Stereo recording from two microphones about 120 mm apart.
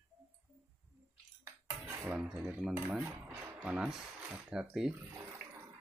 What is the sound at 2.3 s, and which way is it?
Speech, 10° right (ahead or behind).